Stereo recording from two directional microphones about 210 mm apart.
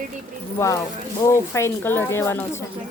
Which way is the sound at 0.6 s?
15° left (ahead or behind).